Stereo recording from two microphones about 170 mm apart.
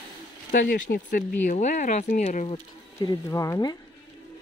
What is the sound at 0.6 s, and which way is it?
Speech, 60° left (ahead or behind).